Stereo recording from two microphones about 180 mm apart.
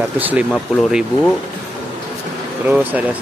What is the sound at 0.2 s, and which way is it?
Speech, 10° right (ahead or behind).